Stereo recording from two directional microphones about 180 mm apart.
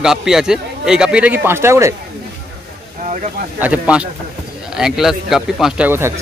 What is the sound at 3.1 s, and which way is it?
Speech, 45° right (ahead or behind).